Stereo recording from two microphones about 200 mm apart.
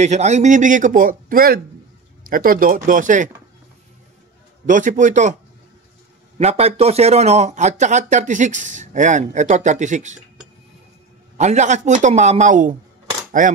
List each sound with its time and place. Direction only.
0.0 s speech: 35° right (ahead or behind)
4.6 s speech: 40° right (ahead or behind)
6.3 s speech: 30° right (ahead or behind)
11.3 s speech: 35° right (ahead or behind)